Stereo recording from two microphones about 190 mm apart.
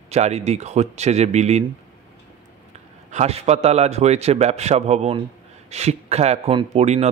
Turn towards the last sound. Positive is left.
turn(degrees=-35)  # may be behind; listen again after turning